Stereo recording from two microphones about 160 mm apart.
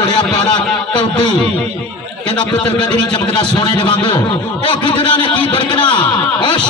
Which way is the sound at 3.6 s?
30° left (ahead or behind).